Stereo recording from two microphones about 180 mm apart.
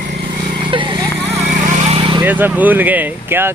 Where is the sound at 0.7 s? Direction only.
25° right (ahead or behind).